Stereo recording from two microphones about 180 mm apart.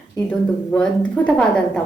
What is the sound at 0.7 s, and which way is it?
A woman's voice, 5° left (ahead or behind).